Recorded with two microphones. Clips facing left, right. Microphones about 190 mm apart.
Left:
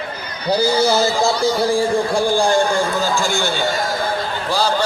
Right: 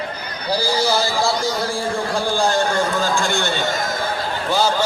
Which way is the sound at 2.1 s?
15° left (ahead or behind).